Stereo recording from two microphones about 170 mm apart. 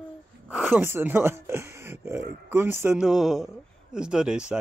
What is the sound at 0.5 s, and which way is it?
Speech, 5° right (ahead or behind).